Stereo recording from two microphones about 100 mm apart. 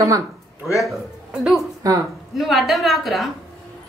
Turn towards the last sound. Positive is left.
turn(degrees=0)  # may be behind; listen again after turning